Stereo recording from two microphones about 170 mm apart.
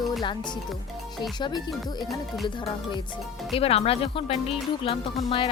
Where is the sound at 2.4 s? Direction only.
30° left (ahead or behind).